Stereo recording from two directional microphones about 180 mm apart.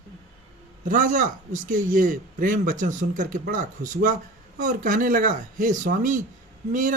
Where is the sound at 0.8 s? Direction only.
45° right (ahead or behind).